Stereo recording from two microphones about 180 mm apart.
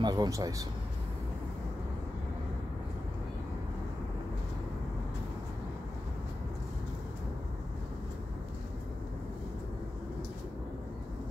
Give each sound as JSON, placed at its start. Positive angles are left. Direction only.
{"t": 0.0, "sound": "speech", "side_deg": -20}